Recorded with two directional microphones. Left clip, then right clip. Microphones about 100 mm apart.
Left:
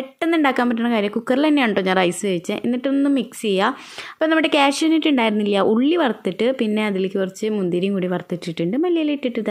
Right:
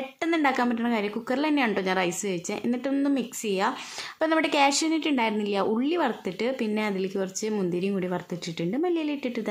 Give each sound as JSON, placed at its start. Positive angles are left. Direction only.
{"t": 0.3, "sound": "a woman's voice", "side_deg": 30}
{"t": 3.4, "sound": "a woman's voice", "side_deg": 35}
{"t": 4.2, "sound": "speech", "side_deg": 25}